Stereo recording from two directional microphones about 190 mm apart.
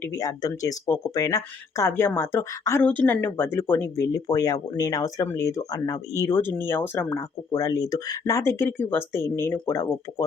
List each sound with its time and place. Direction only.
0.0 s speech: 15° left (ahead or behind)